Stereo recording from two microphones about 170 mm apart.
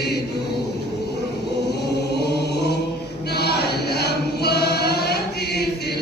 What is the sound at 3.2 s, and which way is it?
Choir, 70° left (ahead or behind).